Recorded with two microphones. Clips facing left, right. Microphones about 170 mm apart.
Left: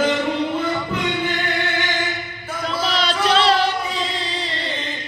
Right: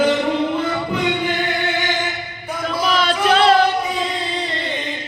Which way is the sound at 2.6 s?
50° right (ahead or behind).